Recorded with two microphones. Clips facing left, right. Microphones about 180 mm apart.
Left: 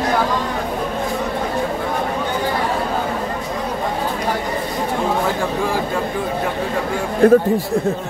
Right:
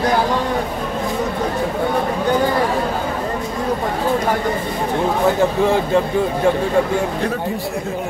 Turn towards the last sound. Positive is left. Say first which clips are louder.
# left 11 dB
turn(degrees=50)  # may be behind; listen again after turning